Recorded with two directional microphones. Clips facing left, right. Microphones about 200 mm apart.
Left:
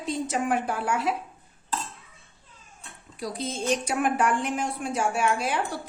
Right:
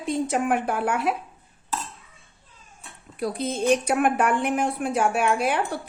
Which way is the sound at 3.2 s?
60° right (ahead or behind).